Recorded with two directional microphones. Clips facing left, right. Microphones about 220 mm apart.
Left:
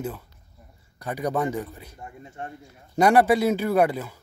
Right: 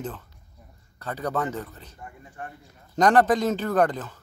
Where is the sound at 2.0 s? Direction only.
25° left (ahead or behind).